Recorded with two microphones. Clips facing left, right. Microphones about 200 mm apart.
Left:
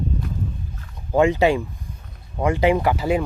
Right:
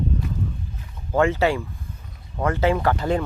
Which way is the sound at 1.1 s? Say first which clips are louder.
Left 3 dB; 15° left (ahead or behind).